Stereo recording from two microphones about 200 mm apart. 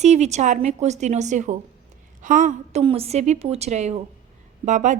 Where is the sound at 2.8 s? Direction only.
30° right (ahead or behind).